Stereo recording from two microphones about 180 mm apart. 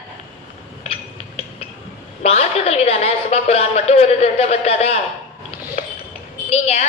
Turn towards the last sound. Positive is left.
turn(degrees=35)  # may be behind; listen again after turning